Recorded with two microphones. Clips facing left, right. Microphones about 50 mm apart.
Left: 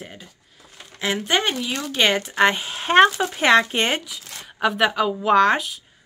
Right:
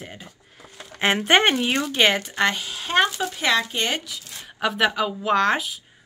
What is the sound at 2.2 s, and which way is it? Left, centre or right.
Speech, centre.